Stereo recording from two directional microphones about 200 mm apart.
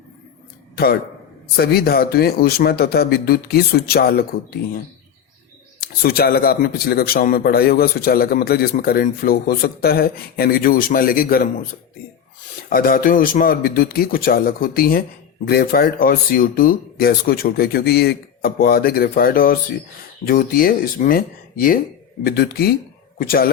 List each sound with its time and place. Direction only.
1.5 s a man's voice: 50° left (ahead or behind)
6.0 s a man's voice: 50° left (ahead or behind)
12.7 s a man's voice: 45° left (ahead or behind)